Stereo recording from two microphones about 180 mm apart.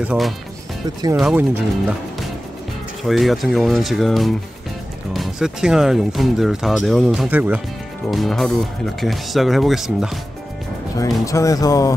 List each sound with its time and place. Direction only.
0.0 s speech: 5° right (ahead or behind)
3.0 s speech: centre (ahead or behind)
11.0 s speech: 15° left (ahead or behind)